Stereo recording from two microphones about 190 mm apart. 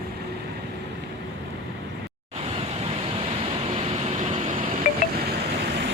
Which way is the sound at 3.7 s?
35° right (ahead or behind).